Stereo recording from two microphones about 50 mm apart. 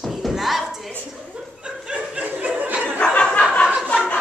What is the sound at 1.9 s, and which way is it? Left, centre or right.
Snicker, right.